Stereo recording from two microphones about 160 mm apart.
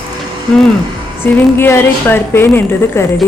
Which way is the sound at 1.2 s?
10° left (ahead or behind).